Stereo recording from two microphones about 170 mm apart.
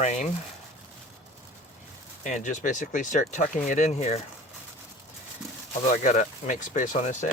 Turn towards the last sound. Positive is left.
turn(degrees=45)  # may be behind; listen again after turning